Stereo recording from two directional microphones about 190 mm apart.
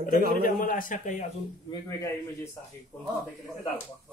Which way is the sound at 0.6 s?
45° left (ahead or behind).